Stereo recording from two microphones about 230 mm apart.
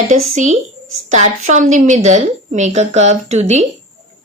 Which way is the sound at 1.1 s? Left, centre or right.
Right.